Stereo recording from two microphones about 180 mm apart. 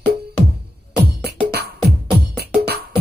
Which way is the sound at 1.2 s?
60° right (ahead or behind).